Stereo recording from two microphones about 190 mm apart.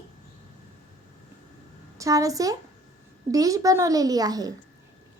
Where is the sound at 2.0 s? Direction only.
15° right (ahead or behind).